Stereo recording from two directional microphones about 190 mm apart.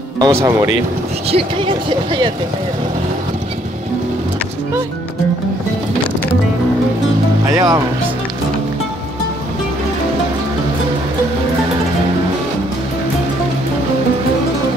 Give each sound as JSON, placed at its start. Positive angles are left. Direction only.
{"t": 0.2, "sound": "speech", "side_deg": -15}
{"t": 1.3, "sound": "speech", "side_deg": -30}
{"t": 7.4, "sound": "speech", "side_deg": -15}